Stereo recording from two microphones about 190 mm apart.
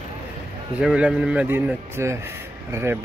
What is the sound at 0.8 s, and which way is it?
A man's voice, 5° right (ahead or behind).